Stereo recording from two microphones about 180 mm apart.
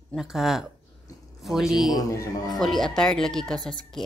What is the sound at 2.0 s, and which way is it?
Speech, 20° left (ahead or behind).